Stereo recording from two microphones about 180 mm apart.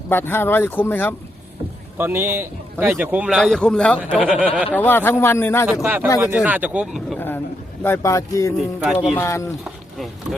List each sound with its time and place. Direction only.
0.1 s speech: 10° left (ahead or behind)
2.0 s a man's voice: 10° right (ahead or behind); by 4.2 s 5° left (ahead or behind)
4.2 s a man's voice: 5° right (ahead or behind)
4.7 s speech: 10° left (ahead or behind)
5.8 s a man's voice: 10° right (ahead or behind)
7.2 s a sound: 10° left (ahead or behind)
7.9 s speech: 15° left (ahead or behind)
8.5 s speech: 5° right (ahead or behind)
9.1 s speech: 15° left (ahead or behind)